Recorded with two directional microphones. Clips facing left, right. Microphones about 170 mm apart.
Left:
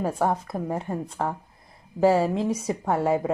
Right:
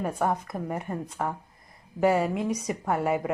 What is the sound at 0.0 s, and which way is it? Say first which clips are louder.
A woman's voice: left 3 dB; 30° left (ahead or behind).